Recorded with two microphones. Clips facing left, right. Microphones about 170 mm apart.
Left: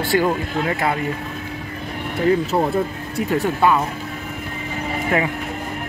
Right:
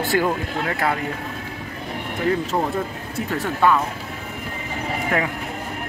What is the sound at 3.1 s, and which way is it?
Speech, 15° left (ahead or behind).